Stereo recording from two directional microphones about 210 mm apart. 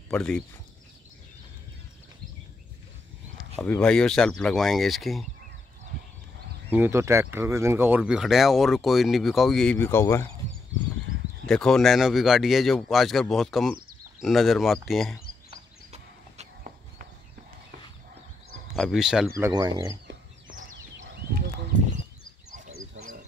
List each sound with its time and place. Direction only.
0.1 s speech: 5° left (ahead or behind)
3.5 s speech: 10° left (ahead or behind)
6.7 s speech: 10° right (ahead or behind); by 10.2 s 10° left (ahead or behind)
11.4 s speech: 5° left (ahead or behind)
18.8 s speech: centre (ahead or behind)
19.3 s speech: 15° right (ahead or behind)
20.1 s chicken: 40° right (ahead or behind)
23.0 s frog: 65° right (ahead or behind)